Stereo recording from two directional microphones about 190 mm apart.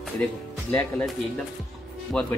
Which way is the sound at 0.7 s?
10° left (ahead or behind).